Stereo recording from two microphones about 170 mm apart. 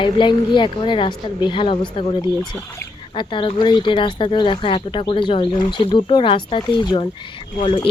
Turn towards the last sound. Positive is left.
turn(degrees=30)  # may be behind; listen again after turning